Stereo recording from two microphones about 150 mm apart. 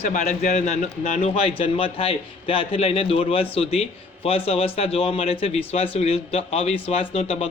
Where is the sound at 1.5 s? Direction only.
35° left (ahead or behind).